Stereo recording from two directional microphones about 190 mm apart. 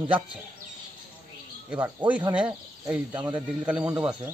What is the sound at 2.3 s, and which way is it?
Speech, 5° right (ahead or behind).